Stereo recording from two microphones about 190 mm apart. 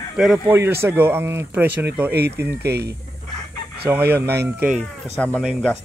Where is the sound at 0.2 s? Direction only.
5° right (ahead or behind).